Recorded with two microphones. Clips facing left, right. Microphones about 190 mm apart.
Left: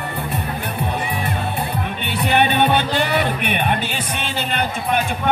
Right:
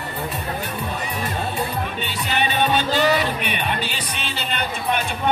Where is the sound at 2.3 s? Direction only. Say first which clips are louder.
Left 4 dB; 55° left (ahead or behind).